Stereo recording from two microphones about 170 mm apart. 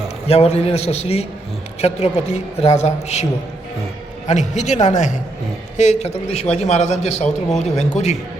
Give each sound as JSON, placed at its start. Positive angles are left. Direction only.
{"t": 0.3, "sound": "a man's voice", "side_deg": 40}
{"t": 4.3, "sound": "a man's voice", "side_deg": 45}